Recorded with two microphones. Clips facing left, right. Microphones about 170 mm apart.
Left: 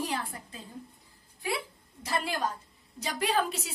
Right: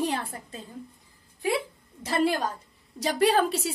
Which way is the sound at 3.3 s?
35° right (ahead or behind).